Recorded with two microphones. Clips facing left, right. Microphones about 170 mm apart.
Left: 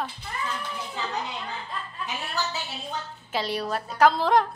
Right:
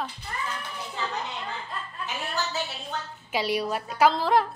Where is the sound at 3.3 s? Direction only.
10° right (ahead or behind).